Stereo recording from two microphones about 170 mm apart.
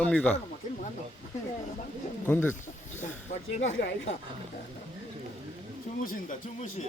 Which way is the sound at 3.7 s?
90° left.